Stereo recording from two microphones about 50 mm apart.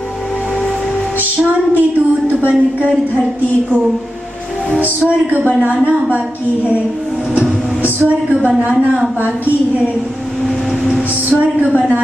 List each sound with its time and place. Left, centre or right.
1.7 s speech: right
4.7 s a woman's voice: right
7.8 s music: right
8.5 s a woman's voice: right
10.4 s vehicle: centre
11.2 s a woman's voice: right